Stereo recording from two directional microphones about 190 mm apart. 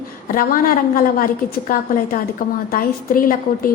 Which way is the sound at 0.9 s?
45° left (ahead or behind).